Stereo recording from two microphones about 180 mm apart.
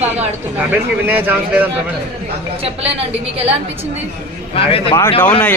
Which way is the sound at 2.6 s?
35° right (ahead or behind).